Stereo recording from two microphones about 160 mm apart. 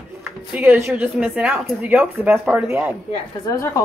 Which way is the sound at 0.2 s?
10° right (ahead or behind).